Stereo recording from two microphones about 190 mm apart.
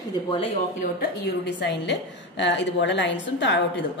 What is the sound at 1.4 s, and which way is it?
A woman's voice, 65° left (ahead or behind).